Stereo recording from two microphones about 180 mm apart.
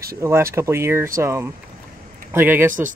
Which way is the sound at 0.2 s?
15° right (ahead or behind).